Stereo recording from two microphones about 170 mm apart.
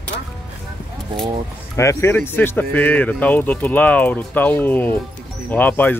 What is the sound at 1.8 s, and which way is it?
Speech, 15° left (ahead or behind).